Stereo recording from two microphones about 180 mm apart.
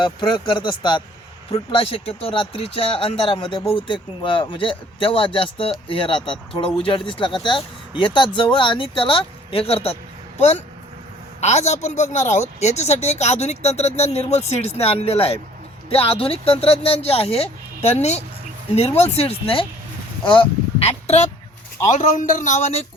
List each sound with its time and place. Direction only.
0.0 s speech: 25° left (ahead or behind)
11.3 s speech: 40° left (ahead or behind)
21.9 s speech: 45° left (ahead or behind)